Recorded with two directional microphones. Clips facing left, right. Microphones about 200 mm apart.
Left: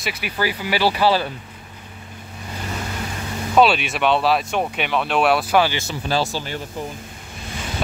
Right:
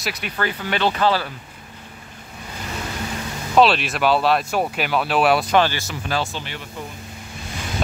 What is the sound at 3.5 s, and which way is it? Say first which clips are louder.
Speech: even; centre (ahead or behind).